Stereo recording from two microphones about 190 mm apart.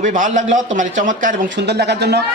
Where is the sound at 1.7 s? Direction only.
60° right (ahead or behind).